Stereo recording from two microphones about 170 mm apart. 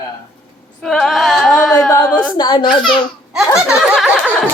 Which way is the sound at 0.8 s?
5° left (ahead or behind).